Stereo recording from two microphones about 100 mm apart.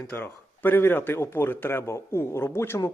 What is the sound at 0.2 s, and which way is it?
Speech, 20° left (ahead or behind).